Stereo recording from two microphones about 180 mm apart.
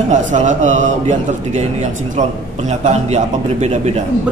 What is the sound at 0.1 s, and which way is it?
A man's voice, 40° right (ahead or behind).